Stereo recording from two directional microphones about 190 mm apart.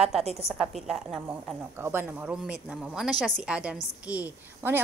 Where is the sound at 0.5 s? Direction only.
Centre (ahead or behind).